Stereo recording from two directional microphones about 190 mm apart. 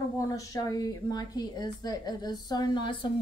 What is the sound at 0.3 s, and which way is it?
Speech, 20° left (ahead or behind).